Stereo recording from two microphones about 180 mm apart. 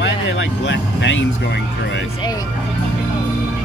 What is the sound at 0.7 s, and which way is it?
Speech, 85° left.